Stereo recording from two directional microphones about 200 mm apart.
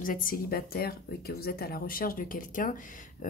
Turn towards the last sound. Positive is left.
turn(degrees=40)  # may be behind; listen again after turning